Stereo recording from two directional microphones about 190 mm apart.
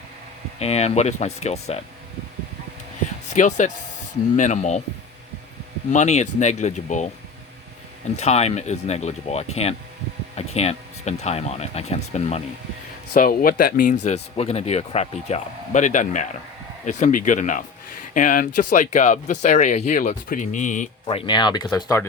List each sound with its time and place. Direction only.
0.6 s speech: 35° left (ahead or behind)
3.2 s speech: 40° left (ahead or behind)
5.9 s speech: 40° left (ahead or behind)
8.1 s speech: 35° left (ahead or behind)
13.1 s speech: 50° left (ahead or behind)
21.1 s speech: 25° left (ahead or behind)